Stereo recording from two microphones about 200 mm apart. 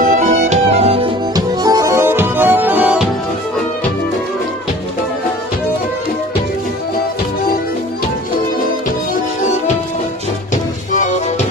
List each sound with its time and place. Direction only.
0.0 s music: 35° right (ahead or behind); by 3.1 s 5° right (ahead or behind)
10.5 s music: 40° left (ahead or behind)